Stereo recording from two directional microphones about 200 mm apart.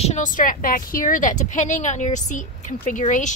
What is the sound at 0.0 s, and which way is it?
Speech, 35° left (ahead or behind).